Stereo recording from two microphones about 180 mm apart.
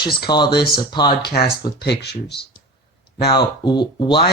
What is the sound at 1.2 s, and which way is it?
Speech, 60° left (ahead or behind).